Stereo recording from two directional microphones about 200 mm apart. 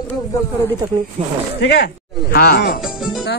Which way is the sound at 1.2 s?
35° right (ahead or behind).